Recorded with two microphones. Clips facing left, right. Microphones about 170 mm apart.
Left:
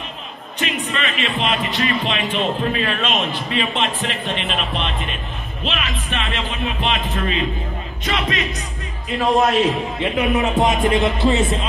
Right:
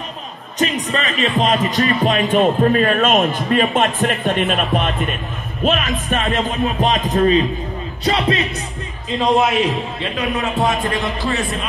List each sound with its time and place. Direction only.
0.6 s a man's voice: 40° right (ahead or behind)
9.4 s a man's voice: centre (ahead or behind)
9.9 s a man's voice: 20° left (ahead or behind)